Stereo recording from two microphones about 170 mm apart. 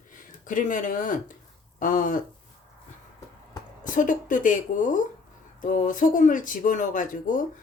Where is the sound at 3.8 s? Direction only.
50° left (ahead or behind).